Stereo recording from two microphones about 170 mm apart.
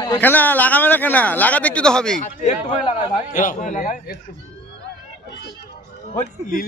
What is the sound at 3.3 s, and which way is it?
Speech, 50° left (ahead or behind).